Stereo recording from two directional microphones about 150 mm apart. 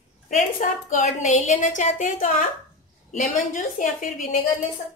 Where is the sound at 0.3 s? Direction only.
55° left (ahead or behind).